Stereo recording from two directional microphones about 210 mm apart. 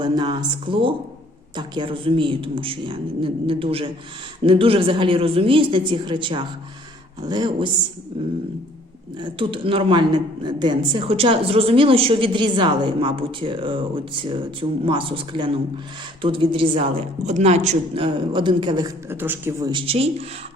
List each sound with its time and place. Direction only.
0.0 s a woman's voice: 20° right (ahead or behind)
9.1 s a woman's voice: 25° right (ahead or behind)